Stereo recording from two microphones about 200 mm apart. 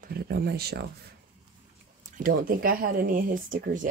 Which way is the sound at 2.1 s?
45° right (ahead or behind).